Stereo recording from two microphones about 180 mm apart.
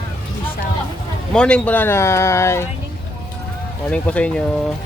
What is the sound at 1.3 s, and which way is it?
Speech, 5° left (ahead or behind).